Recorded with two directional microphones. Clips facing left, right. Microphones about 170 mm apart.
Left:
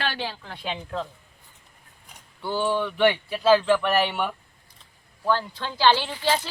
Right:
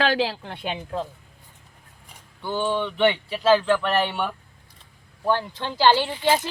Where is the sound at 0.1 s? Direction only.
90° right.